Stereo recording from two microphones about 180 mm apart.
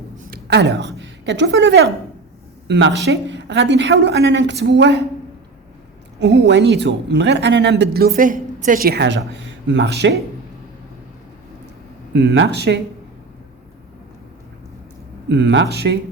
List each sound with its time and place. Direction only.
0.3 s a woman's voice: 65° right (ahead or behind)
6.1 s speech: 75° right (ahead or behind)
12.1 s speech: 75° right (ahead or behind)
15.3 s speech: 70° right (ahead or behind)